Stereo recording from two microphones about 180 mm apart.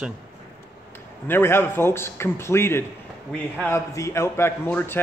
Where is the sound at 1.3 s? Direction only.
10° left (ahead or behind).